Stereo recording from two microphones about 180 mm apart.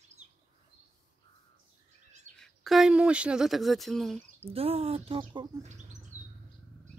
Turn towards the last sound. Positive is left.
turn(degrees=-30)  # may be behind; listen again after turning